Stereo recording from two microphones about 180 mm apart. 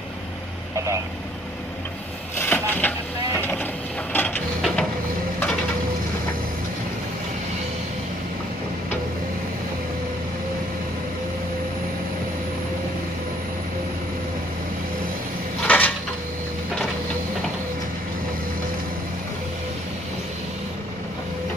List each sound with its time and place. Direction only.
0.7 s vehicle: 15° right (ahead or behind)
2.3 s a sound: 15° left (ahead or behind)
3.3 s vehicle: 10° left (ahead or behind)
4.1 s printer: 10° left (ahead or behind)
4.6 s printer: centre (ahead or behind)
15.6 s dishes: 10° left (ahead or behind)